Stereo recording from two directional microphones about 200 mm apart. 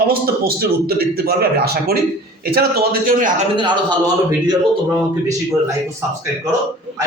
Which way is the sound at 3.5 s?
25° right (ahead or behind).